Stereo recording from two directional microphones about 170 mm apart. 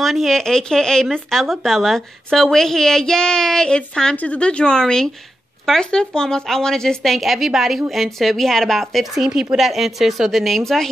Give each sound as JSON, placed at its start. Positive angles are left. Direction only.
{"t": 0.0, "sound": "speech", "side_deg": 0}